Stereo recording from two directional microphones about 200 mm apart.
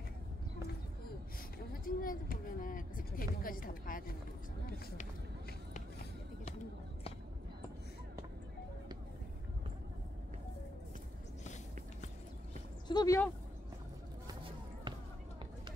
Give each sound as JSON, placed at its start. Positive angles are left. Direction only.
{"t": 1.7, "sound": "a sound", "side_deg": 45}
{"t": 5.7, "sound": "run", "side_deg": 35}
{"t": 12.8, "sound": "speech", "side_deg": 20}
{"t": 14.9, "sound": "basketball bounce", "side_deg": -25}